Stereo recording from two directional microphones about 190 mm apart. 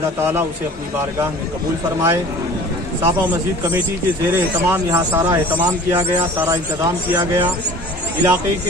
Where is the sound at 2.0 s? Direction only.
15° right (ahead or behind).